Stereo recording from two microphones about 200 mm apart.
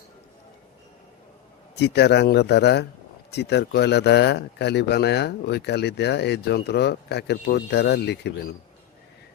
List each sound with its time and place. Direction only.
1.7 s speech: 55° left (ahead or behind)